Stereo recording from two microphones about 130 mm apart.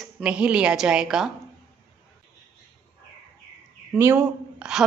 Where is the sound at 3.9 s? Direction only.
20° right (ahead or behind).